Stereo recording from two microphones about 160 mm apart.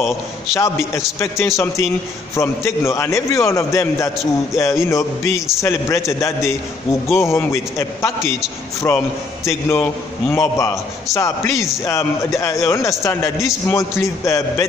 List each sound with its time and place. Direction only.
0.6 s a man's voice: 20° left (ahead or behind)